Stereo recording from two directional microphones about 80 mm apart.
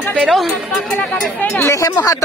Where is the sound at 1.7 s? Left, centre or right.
Left.